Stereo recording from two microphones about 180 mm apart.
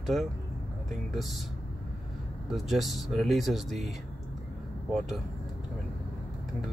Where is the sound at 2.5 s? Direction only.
Centre (ahead or behind).